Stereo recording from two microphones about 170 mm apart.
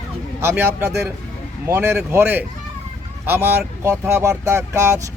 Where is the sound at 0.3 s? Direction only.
15° right (ahead or behind).